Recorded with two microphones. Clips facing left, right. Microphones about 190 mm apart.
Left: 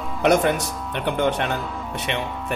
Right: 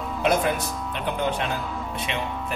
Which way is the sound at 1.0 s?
75° left (ahead or behind).